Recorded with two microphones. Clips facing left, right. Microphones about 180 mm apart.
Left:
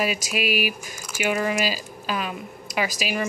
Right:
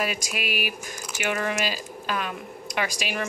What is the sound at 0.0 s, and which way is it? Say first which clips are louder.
Speech: left 4 dB; 5° left (ahead or behind).